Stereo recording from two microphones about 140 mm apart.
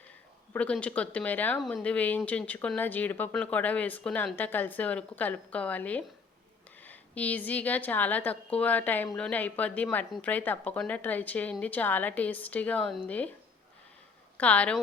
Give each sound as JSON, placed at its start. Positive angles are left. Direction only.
{"t": 0.5, "sound": "speech", "side_deg": 10}
{"t": 14.3, "sound": "speech", "side_deg": 10}